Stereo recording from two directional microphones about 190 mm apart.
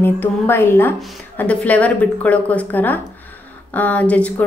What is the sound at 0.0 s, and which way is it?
A woman's voice, 10° left (ahead or behind).